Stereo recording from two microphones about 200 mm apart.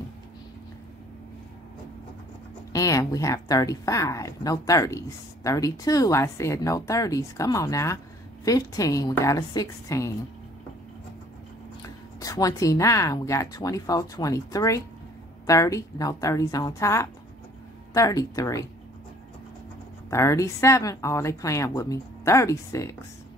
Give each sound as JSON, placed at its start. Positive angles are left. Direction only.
{"t": 2.7, "sound": "speech", "side_deg": 15}
{"t": 12.2, "sound": "speech", "side_deg": 15}
{"t": 20.1, "sound": "speech", "side_deg": 15}